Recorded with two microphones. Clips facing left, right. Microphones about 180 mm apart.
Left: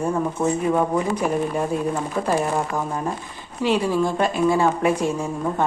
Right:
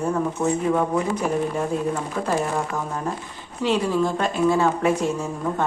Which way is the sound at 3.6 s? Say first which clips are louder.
Left 1 dB; 10° left (ahead or behind).